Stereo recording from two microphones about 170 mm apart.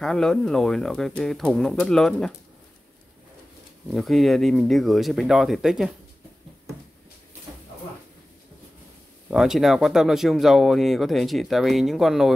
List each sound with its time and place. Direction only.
0.0 s speech: 5° left (ahead or behind)
3.9 s speech: centre (ahead or behind)
9.3 s speech: centre (ahead or behind)